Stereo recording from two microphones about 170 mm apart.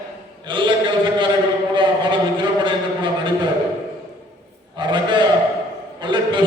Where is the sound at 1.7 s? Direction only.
30° right (ahead or behind).